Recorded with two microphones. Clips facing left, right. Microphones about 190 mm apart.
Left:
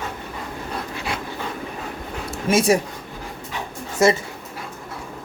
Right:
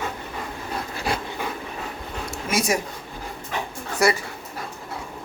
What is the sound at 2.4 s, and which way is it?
Speech, 30° left (ahead or behind).